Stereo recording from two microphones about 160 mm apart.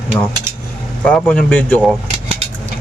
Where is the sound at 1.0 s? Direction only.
10° left (ahead or behind).